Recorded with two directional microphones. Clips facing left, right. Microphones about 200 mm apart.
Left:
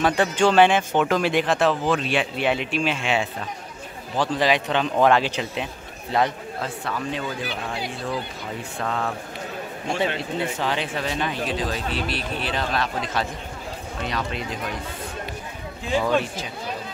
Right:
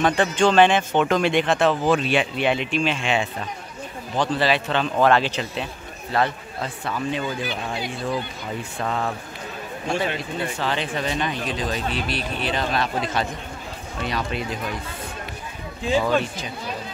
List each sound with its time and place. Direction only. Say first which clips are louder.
0.0 s a man's voice: right 1 dB; 5° left (ahead or behind)
8.8 s speech: right 1 dB; 10° right (ahead or behind)
9.9 s speech: left 1 dB; 25° left (ahead or behind)
10.7 s speech: right 1 dB; 5° left (ahead or behind)
16.0 s speech: left 2 dB; 5° left (ahead or behind)